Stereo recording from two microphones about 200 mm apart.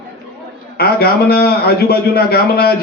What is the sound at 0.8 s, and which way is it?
A man's voice, 50° left (ahead or behind).